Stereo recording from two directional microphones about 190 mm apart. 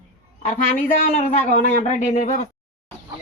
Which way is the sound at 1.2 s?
45° left (ahead or behind).